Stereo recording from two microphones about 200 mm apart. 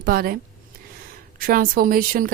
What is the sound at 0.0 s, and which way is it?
Speech, 50° right (ahead or behind).